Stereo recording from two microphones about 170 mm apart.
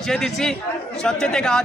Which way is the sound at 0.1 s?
5° left (ahead or behind).